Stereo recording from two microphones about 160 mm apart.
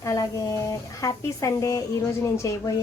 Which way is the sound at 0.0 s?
20° left (ahead or behind).